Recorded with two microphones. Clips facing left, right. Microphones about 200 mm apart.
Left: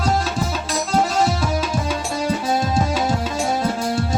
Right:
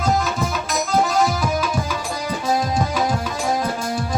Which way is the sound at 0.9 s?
30° left (ahead or behind).